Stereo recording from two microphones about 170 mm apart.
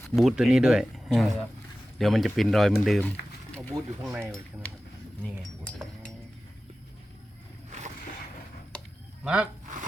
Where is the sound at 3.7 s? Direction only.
20° right (ahead or behind).